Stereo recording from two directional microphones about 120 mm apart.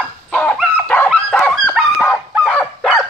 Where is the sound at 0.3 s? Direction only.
15° left (ahead or behind).